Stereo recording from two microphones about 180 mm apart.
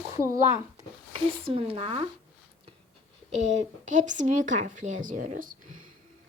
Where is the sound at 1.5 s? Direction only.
30° right (ahead or behind).